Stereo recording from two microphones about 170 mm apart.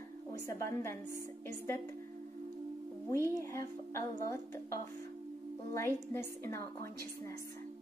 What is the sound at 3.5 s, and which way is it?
Speech, 15° left (ahead or behind).